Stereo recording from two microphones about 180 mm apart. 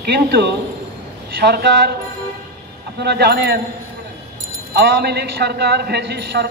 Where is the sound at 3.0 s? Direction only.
65° right (ahead or behind).